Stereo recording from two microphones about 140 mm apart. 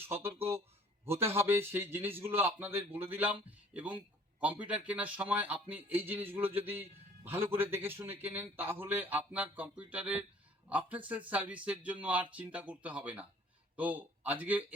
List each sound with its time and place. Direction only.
0.0 s a man's voice: 15° right (ahead or behind)